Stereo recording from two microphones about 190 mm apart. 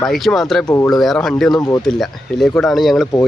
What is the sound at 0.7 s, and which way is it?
Speech, 15° left (ahead or behind).